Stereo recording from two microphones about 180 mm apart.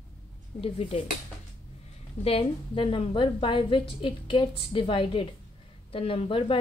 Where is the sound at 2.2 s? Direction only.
30° left (ahead or behind).